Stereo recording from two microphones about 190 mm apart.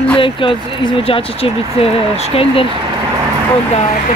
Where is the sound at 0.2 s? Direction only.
25° left (ahead or behind).